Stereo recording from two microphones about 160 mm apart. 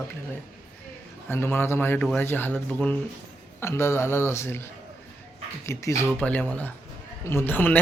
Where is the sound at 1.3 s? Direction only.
15° left (ahead or behind).